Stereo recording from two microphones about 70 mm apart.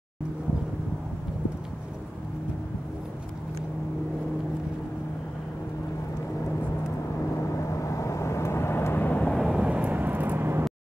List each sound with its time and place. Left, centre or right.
7.3 s vehicle: left
9.4 s vehicle: centre
9.7 s vehicle: right